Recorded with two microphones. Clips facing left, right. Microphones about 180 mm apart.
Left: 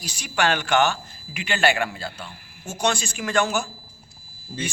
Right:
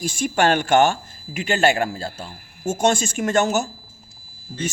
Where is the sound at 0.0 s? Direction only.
50° right (ahead or behind).